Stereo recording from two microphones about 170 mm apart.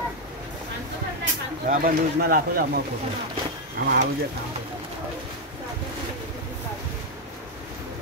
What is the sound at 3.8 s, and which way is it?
Speech, 70° right (ahead or behind).